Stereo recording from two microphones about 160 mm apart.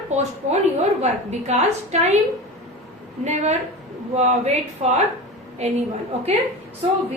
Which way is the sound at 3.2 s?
45° right (ahead or behind).